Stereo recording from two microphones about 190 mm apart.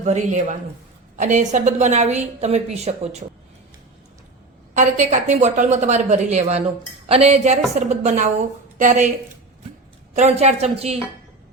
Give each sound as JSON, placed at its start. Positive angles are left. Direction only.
{"t": 0.0, "sound": "a woman's voice", "side_deg": -35}
{"t": 4.7, "sound": "a woman's voice", "side_deg": -40}
{"t": 10.2, "sound": "a woman's voice", "side_deg": -35}